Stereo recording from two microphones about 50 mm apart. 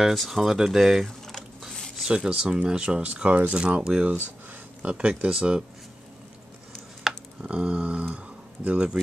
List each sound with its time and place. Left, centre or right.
0.0 s speech: centre
1.0 s a sound: centre
2.0 s speech: centre
3.1 s speech: right
3.5 s speech: centre
7.0 s a sound: centre
7.4 s speech: right